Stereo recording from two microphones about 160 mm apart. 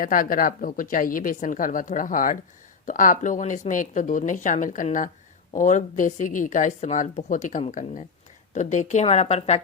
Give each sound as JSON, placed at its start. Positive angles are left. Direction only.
{"t": 0.0, "sound": "a woman's voice", "side_deg": 60}